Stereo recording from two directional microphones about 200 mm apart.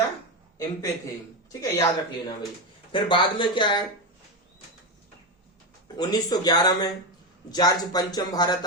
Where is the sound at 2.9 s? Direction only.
25° left (ahead or behind).